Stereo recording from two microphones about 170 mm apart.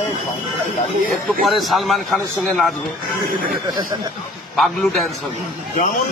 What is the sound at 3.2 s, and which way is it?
Speech, 60° right (ahead or behind).